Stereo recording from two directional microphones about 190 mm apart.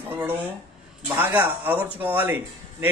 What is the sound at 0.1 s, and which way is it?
A man's voice, 10° right (ahead or behind).